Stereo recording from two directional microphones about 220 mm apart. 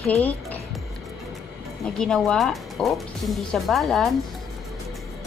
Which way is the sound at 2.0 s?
5° left (ahead or behind).